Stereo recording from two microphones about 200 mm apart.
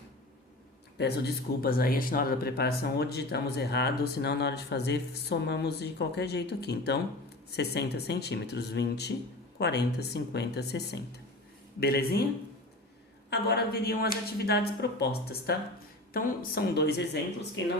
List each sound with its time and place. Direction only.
0.9 s a woman's voice: 55° left (ahead or behind)
13.3 s a woman's voice: 55° left (ahead or behind)